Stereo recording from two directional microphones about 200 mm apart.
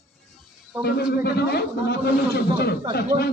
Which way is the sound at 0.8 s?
55° left (ahead or behind).